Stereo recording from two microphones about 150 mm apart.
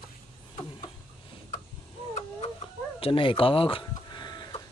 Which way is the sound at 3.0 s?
35° left (ahead or behind).